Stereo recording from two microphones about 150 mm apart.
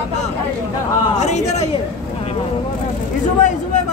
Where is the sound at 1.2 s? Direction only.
50° left (ahead or behind).